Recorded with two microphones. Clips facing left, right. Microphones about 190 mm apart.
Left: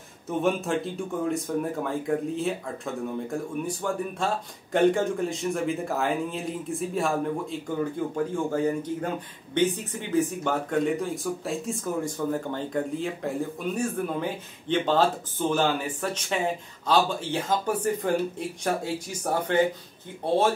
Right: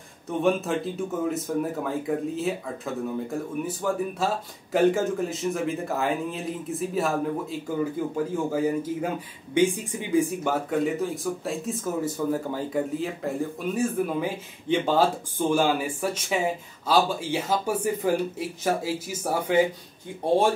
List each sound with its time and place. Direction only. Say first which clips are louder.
0.3 s speech: right 1 dB; centre (ahead or behind)